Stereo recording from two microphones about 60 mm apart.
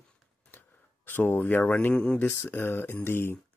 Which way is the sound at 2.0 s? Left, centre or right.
Centre.